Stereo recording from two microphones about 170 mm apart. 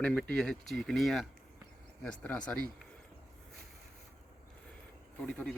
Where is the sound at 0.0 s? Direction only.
5° left (ahead or behind).